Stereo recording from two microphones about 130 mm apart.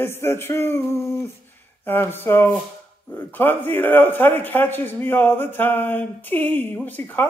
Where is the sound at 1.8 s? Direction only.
15° left (ahead or behind).